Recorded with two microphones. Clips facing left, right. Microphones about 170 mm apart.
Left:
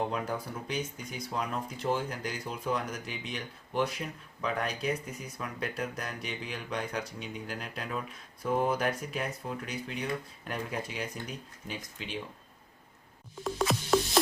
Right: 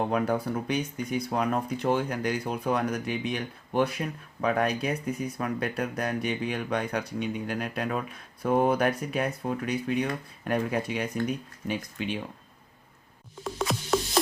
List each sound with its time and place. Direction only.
0.1 s speech: 65° right (ahead or behind)
13.4 s music: centre (ahead or behind)